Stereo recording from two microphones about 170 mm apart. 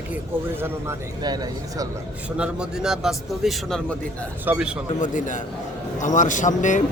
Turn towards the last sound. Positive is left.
turn(degrees=45)  # may be behind; listen again after turning